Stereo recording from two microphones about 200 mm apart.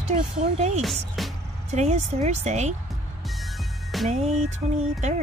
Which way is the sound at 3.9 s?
Centre (ahead or behind).